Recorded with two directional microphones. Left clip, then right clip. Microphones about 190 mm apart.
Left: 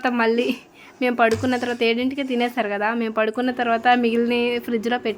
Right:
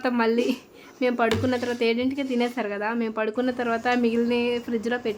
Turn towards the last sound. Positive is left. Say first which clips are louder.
# left 4 dB
turn(degrees=20)  # may be behind; listen again after turning